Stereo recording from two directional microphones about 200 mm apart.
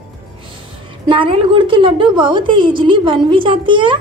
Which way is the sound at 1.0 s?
25° right (ahead or behind).